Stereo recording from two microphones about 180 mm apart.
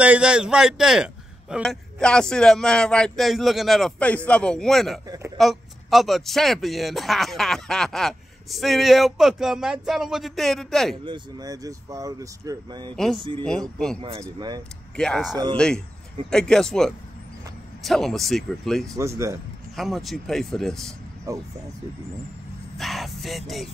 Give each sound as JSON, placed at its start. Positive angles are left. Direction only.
{"t": 0.0, "sound": "a man's voice", "side_deg": -5}
{"t": 5.0, "sound": "speech", "side_deg": -20}
{"t": 5.4, "sound": "a man's voice", "side_deg": 0}
{"t": 11.1, "sound": "speech", "side_deg": -20}
{"t": 12.9, "sound": "a man's voice", "side_deg": 0}
{"t": 14.2, "sound": "speech", "side_deg": -25}
{"t": 15.0, "sound": "a man's voice", "side_deg": 5}
{"t": 18.9, "sound": "speech", "side_deg": -15}
{"t": 19.7, "sound": "a man's voice", "side_deg": 0}
{"t": 21.3, "sound": "speech", "side_deg": -20}
{"t": 22.8, "sound": "a man's voice", "side_deg": 0}